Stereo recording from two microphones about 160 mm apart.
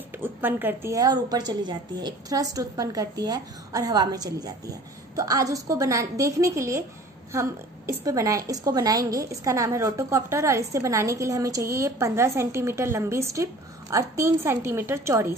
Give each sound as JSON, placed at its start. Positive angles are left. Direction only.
{"t": 0.4, "sound": "a woman's voice", "side_deg": -10}